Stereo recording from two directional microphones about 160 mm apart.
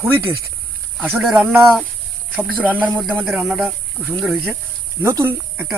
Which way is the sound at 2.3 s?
10° right (ahead or behind).